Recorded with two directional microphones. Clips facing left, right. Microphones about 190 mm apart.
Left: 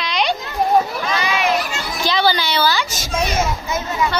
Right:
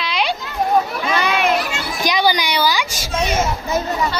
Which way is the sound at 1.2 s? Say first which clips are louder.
Right 3 dB; 55° right (ahead or behind).